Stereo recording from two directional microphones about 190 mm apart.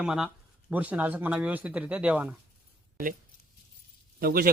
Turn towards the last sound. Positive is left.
turn(degrees=-50)  # may be behind; listen again after turning